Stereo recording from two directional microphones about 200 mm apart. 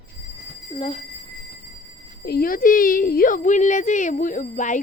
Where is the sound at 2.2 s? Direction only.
50° left (ahead or behind).